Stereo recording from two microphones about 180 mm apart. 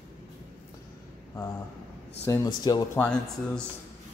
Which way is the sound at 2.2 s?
20° left (ahead or behind).